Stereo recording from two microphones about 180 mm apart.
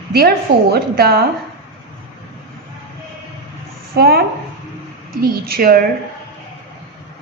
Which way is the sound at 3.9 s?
60° right (ahead or behind).